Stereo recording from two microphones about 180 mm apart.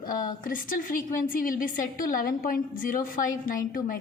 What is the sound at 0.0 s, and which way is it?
A woman's voice, 50° left (ahead or behind).